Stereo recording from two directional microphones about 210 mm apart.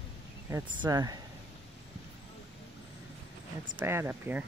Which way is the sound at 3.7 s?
10° right (ahead or behind).